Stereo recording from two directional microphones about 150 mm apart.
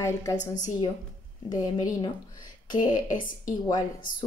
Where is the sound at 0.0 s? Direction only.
20° left (ahead or behind).